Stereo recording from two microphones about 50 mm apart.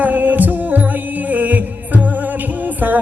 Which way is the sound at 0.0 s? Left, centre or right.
Right.